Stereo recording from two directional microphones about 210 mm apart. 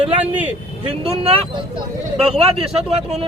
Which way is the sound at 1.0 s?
25° right (ahead or behind).